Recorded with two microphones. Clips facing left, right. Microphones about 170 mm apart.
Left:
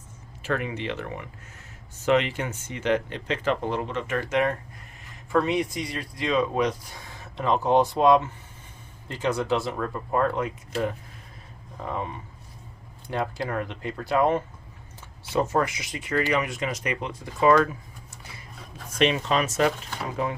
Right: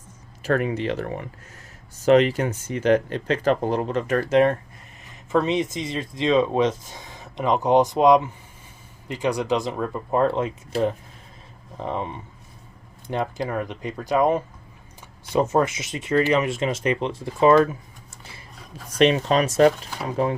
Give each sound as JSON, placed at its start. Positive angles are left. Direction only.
{"t": 0.4, "sound": "speech", "side_deg": -40}
{"t": 5.3, "sound": "speech", "side_deg": -20}
{"t": 18.9, "sound": "speech", "side_deg": -40}